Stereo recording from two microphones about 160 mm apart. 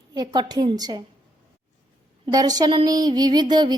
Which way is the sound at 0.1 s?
25° right (ahead or behind).